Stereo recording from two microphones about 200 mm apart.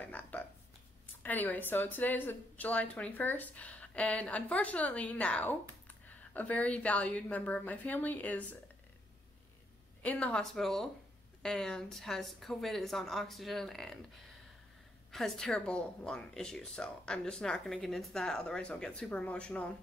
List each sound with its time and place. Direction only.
0.0 s a sound: 5° left (ahead or behind)
1.2 s speech: 10° left (ahead or behind)
10.0 s a woman's voice: 5° left (ahead or behind)